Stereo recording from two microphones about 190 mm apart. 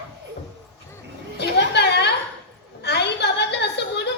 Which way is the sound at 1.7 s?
60° left (ahead or behind).